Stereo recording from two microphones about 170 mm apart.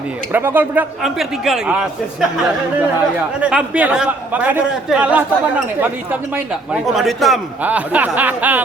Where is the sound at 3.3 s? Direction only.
5° right (ahead or behind).